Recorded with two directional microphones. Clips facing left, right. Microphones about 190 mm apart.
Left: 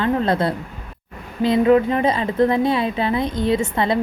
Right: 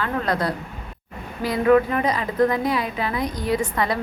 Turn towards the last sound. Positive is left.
turn(degrees=25)  # may be behind; listen again after turning